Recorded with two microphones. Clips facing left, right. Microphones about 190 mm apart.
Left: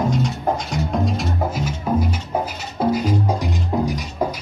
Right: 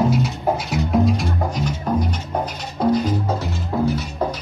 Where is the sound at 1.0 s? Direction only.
5° left (ahead or behind).